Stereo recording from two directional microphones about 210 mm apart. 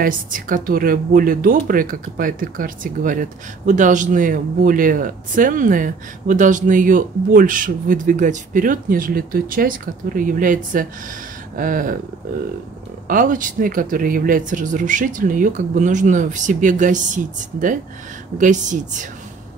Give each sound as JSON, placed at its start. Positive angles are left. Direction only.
{"t": 0.0, "sound": "speech", "side_deg": -40}
{"t": 13.1, "sound": "speech", "side_deg": -40}